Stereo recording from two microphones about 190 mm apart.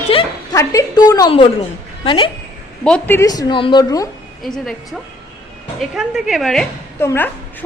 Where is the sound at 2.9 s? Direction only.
10° left (ahead or behind).